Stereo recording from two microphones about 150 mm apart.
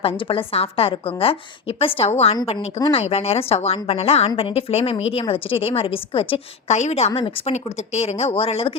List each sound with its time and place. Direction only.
0.0 s a woman's voice: 40° left (ahead or behind)